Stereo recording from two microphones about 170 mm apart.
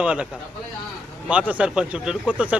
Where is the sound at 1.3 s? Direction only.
10° right (ahead or behind).